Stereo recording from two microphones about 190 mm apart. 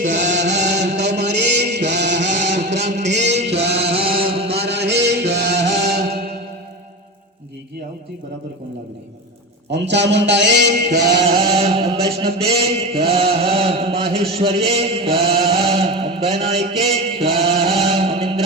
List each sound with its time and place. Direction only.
0.6 s music: 65° right (ahead or behind)
1.2 s chant: 65° right (ahead or behind)
2.7 s music: 40° right (ahead or behind)
3.2 s chant: 35° right (ahead or behind)
4.5 s chant: 60° right (ahead or behind)
5.3 s music: 60° right (ahead or behind)
9.6 s a man's voice: 65° right (ahead or behind)
11.2 s chant: 30° right (ahead or behind)